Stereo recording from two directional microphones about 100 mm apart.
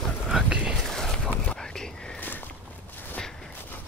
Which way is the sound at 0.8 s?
5° left (ahead or behind).